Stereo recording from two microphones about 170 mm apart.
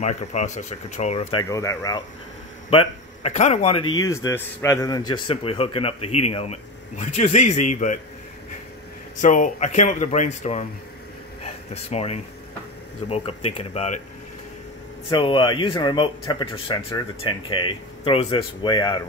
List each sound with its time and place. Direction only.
0.0 s a man's voice: 40° left (ahead or behind)
1.5 s a man's voice: 20° left (ahead or behind)
2.7 s a man's voice: 35° left (ahead or behind)
3.9 s a man's voice: 20° left (ahead or behind); by 8.0 s 45° left (ahead or behind)
9.2 s a man's voice: 50° left (ahead or behind)
15.0 s a man's voice: 30° left (ahead or behind)